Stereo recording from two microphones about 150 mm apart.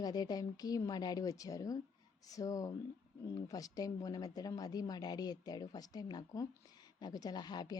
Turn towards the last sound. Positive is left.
turn(degrees=30)  # may be behind; listen again after turning